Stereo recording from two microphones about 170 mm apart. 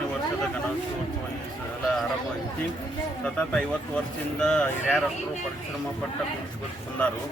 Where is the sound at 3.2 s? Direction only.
10° left (ahead or behind).